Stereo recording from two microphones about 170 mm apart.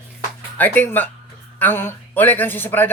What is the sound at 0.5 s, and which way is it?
Speech, 10° left (ahead or behind).